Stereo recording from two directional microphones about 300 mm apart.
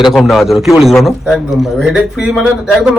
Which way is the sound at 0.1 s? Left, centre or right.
Centre.